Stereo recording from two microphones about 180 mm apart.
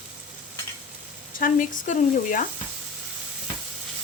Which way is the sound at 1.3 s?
50° left (ahead or behind).